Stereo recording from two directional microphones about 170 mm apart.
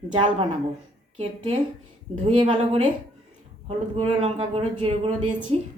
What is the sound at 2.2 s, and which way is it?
Speech, 30° right (ahead or behind).